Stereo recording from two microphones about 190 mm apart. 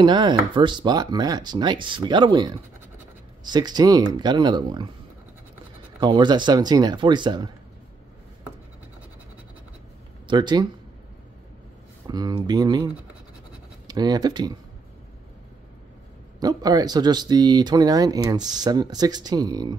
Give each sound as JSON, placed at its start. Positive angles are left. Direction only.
{"t": 0.0, "sound": "speech", "side_deg": -25}
{"t": 5.9, "sound": "speech", "side_deg": -25}
{"t": 10.2, "sound": "speech", "side_deg": -25}
{"t": 12.1, "sound": "speech", "side_deg": -20}
{"t": 16.3, "sound": "speech", "side_deg": -20}